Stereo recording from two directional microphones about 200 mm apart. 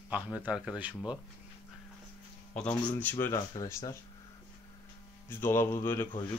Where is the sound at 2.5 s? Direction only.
5° left (ahead or behind).